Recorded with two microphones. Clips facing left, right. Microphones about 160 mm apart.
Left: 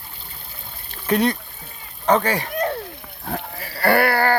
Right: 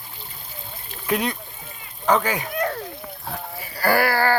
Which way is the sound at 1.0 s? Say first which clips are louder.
Left 5 dB; 40° left (ahead or behind).